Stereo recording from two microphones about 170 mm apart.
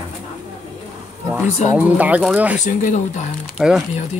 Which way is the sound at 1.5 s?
45° left (ahead or behind).